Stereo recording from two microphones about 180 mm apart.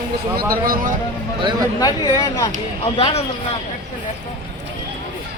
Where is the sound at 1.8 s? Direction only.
25° left (ahead or behind).